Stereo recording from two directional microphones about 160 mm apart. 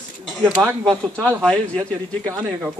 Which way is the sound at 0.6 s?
5° right (ahead or behind).